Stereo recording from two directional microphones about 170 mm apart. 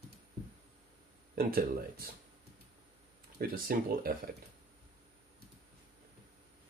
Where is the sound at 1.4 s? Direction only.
60° right (ahead or behind).